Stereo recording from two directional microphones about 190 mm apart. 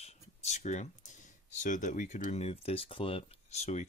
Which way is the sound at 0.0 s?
35° left (ahead or behind).